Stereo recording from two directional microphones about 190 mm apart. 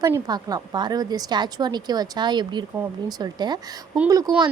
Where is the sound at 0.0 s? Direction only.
20° right (ahead or behind).